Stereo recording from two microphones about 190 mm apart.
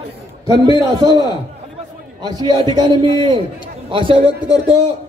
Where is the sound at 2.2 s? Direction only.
25° right (ahead or behind).